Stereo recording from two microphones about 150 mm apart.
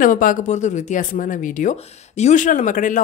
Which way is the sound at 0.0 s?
65° left (ahead or behind).